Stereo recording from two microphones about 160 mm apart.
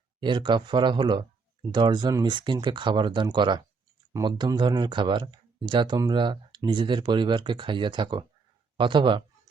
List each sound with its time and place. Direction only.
0.2 s speech: 30° right (ahead or behind)